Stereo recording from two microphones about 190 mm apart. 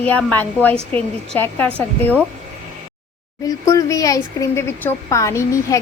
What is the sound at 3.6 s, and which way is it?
A woman's voice, 15° left (ahead or behind).